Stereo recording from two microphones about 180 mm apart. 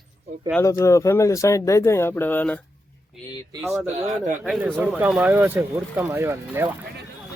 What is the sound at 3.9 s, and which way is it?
Speech, 35° right (ahead or behind).